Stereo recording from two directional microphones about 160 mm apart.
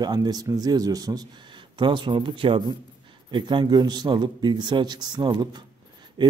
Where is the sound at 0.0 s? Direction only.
25° right (ahead or behind).